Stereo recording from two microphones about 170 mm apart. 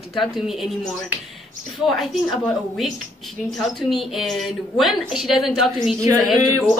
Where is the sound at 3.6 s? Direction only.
Centre (ahead or behind).